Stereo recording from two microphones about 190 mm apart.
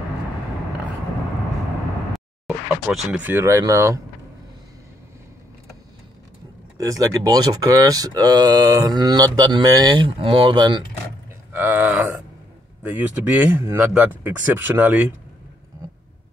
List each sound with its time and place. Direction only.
2.1 s speech: centre (ahead or behind); by 4.0 s 15° right (ahead or behind)
6.8 s speech: 15° right (ahead or behind)
11.5 s speech: 10° right (ahead or behind)